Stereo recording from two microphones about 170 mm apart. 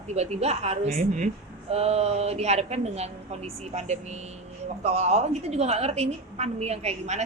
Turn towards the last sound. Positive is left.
turn(degrees=-40)  # may be behind; listen again after turning